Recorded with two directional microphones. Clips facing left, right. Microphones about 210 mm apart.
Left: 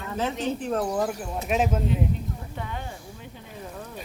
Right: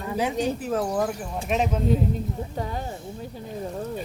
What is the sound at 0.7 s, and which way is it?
Speech, centre (ahead or behind).